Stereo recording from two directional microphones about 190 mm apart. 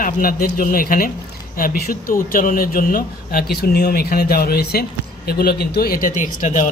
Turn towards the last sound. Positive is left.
turn(degrees=40)  # may be behind; listen again after turning